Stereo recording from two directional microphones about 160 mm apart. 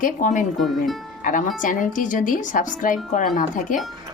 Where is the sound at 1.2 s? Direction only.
55° left (ahead or behind).